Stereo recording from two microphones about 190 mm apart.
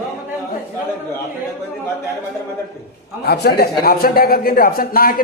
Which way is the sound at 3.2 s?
55° left (ahead or behind).